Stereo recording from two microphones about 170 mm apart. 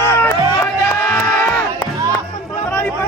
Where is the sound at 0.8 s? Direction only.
15° left (ahead or behind).